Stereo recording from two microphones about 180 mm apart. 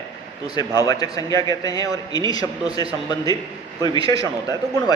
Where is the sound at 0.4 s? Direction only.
20° left (ahead or behind).